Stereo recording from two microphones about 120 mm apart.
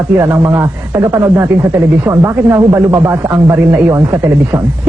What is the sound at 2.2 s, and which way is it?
Speech, 25° right (ahead or behind).